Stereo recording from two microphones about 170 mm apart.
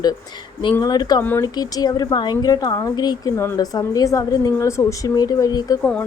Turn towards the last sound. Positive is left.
turn(degrees=20)  # may be behind; listen again after turning